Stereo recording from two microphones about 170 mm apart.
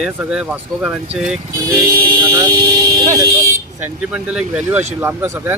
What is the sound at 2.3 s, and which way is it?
Vehicle, 20° right (ahead or behind).